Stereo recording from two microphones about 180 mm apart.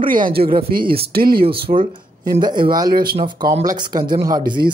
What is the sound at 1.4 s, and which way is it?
Speech, 30° right (ahead or behind).